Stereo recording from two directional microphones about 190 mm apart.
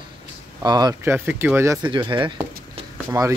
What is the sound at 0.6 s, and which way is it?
Speech, 20° right (ahead or behind).